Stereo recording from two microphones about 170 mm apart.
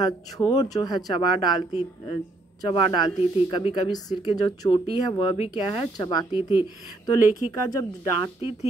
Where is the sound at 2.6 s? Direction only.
25° left (ahead or behind).